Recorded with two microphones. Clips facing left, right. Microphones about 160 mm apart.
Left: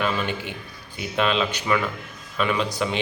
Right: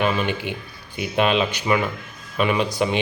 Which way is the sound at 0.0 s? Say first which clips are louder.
Right 3 dB; 15° right (ahead or behind).